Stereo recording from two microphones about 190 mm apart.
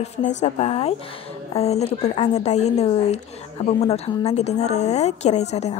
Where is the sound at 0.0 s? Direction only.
35° left (ahead or behind).